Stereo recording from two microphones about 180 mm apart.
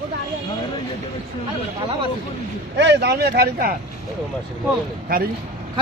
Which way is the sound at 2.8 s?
70° right (ahead or behind).